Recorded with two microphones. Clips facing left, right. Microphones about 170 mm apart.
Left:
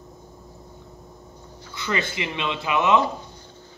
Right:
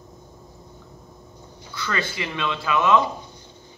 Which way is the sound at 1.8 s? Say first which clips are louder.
Left 1 dB; 20° left (ahead or behind).